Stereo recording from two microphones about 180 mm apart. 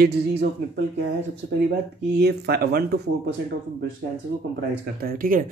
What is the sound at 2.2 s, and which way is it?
Speech, 65° right (ahead or behind).